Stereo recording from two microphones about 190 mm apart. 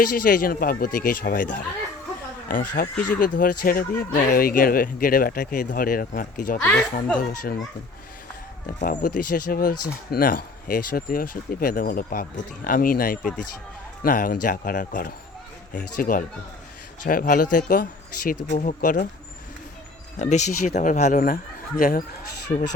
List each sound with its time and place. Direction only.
0.0 s speech: 50° left (ahead or behind)
6.6 s speech: 10° left (ahead or behind)
7.2 s speech: 50° left (ahead or behind)
8.6 s speech: 50° left (ahead or behind)
20.1 s speech: 40° left (ahead or behind)